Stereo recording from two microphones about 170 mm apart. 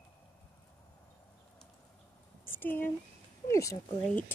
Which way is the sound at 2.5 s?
10° left (ahead or behind).